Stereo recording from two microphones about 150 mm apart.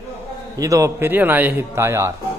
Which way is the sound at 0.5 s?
20° right (ahead or behind).